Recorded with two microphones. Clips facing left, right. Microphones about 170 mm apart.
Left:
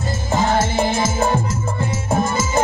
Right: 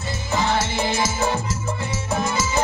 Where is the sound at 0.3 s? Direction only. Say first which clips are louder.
Left 4 dB; 50° left (ahead or behind).